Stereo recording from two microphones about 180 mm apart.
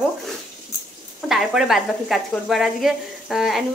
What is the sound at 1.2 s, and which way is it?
Speech, centre (ahead or behind).